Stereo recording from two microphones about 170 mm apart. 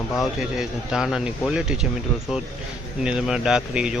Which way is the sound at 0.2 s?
Centre (ahead or behind).